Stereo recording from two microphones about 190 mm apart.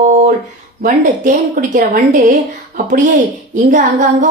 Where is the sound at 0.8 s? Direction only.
45° right (ahead or behind).